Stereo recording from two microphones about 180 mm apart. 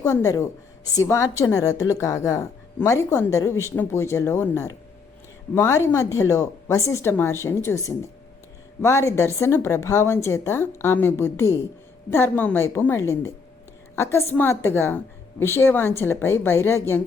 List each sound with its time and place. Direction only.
0.0 s a woman's voice: 15° left (ahead or behind)
8.8 s a woman's voice: 15° left (ahead or behind)